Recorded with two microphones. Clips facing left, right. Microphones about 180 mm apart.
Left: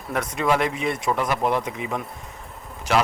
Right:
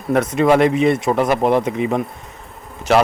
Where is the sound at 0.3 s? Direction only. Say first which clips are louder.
Right 8 dB; 60° right (ahead or behind).